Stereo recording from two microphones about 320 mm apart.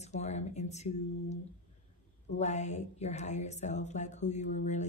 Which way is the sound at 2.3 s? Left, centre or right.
Left.